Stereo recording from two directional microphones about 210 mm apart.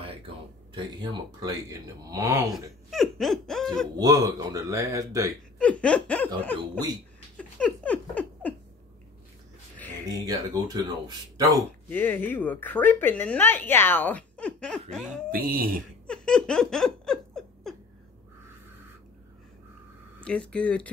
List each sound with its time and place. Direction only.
0.7 s speech: 20° right (ahead or behind)
2.9 s a sound: centre (ahead or behind)
3.9 s speech: 15° right (ahead or behind)
5.6 s laughter: 5° left (ahead or behind)
7.3 s a sound: 5° left (ahead or behind)
10.0 s speech: 15° right (ahead or behind)
11.9 s speech: 10° left (ahead or behind)
15.3 s speech: 45° right (ahead or behind)
16.1 s laughter: 5° left (ahead or behind)
20.2 s laughter: 5° left (ahead or behind)